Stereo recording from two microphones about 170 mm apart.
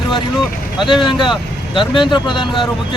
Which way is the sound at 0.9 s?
30° left (ahead or behind).